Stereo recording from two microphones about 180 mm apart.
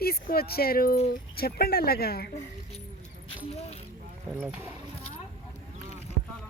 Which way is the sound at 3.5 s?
35° left (ahead or behind).